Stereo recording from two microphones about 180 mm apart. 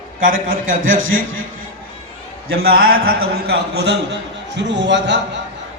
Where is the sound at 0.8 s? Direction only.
90° right.